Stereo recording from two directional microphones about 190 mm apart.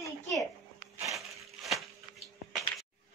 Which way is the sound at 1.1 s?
Centre (ahead or behind).